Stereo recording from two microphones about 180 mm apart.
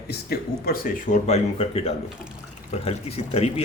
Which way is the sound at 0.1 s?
60° left (ahead or behind).